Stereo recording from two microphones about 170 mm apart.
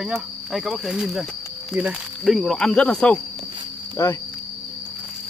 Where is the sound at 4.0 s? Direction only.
20° left (ahead or behind).